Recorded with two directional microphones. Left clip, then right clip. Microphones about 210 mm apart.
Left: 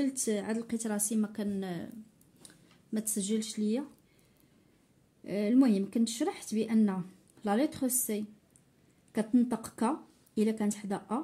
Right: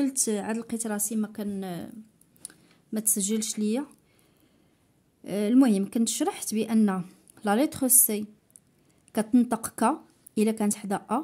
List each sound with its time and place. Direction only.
0.0 s a woman's voice: 35° right (ahead or behind)
5.2 s speech: 35° right (ahead or behind)